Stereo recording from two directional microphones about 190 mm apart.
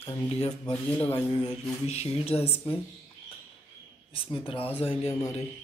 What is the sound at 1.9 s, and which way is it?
Speech, 30° left (ahead or behind).